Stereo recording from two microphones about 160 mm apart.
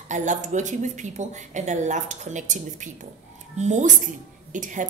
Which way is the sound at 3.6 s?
45° right (ahead or behind).